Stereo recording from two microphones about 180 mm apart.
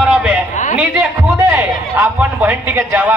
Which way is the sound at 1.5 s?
10° right (ahead or behind).